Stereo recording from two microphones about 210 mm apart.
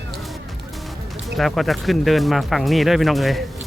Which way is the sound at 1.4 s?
Centre (ahead or behind).